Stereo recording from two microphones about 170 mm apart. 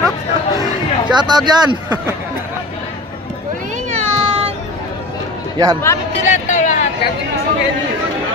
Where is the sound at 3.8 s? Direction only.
35° right (ahead or behind).